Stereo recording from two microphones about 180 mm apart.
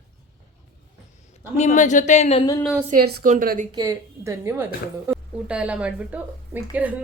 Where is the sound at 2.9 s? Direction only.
60° right (ahead or behind).